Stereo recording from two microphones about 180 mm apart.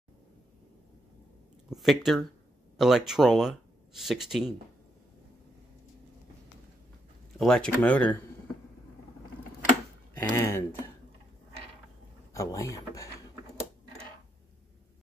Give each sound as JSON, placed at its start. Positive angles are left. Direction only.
{"t": 1.7, "sound": "speech", "side_deg": 0}
{"t": 7.3, "sound": "speech", "side_deg": 5}
{"t": 10.1, "sound": "speech", "side_deg": 15}
{"t": 12.4, "sound": "speech", "side_deg": 20}